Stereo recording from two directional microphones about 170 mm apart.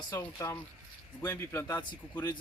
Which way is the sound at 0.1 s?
15° left (ahead or behind).